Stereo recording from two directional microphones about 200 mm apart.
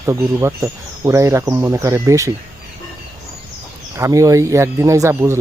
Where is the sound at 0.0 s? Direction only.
15° right (ahead or behind).